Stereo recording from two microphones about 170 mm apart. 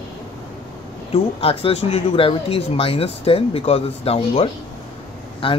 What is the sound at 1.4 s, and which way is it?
Speech, 35° left (ahead or behind).